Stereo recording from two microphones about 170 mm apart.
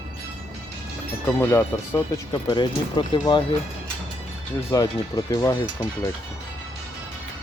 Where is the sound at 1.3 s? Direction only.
15° left (ahead or behind).